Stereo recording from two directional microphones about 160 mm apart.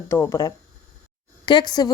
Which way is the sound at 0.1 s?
20° left (ahead or behind).